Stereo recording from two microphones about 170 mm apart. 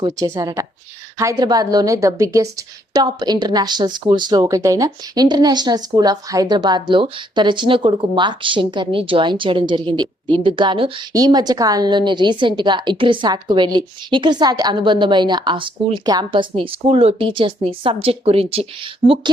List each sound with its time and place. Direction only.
0.0 s speech: 20° right (ahead or behind)